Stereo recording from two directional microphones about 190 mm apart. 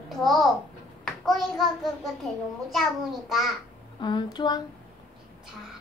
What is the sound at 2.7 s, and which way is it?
Speech, centre (ahead or behind).